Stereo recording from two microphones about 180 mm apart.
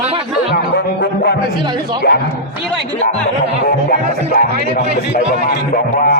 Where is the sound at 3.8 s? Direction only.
55° left (ahead or behind).